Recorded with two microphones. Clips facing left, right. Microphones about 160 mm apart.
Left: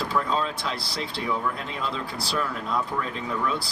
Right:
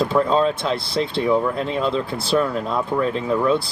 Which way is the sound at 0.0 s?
25° right (ahead or behind).